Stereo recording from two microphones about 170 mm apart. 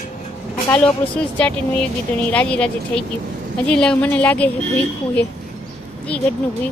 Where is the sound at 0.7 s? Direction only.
5° left (ahead or behind).